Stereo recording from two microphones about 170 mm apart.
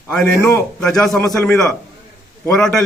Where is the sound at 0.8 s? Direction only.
Centre (ahead or behind).